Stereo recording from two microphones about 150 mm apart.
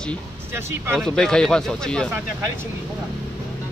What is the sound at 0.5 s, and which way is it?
Speech, 15° right (ahead or behind).